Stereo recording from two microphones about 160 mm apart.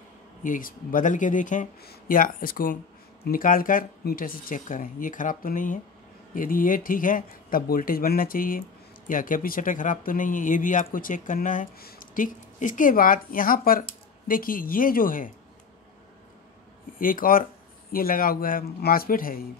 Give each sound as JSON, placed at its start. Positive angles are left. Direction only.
{"t": 0.4, "sound": "speech", "side_deg": 60}
{"t": 17.0, "sound": "speech", "side_deg": 60}